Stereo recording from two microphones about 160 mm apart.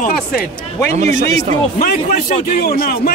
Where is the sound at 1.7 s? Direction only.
65° left (ahead or behind).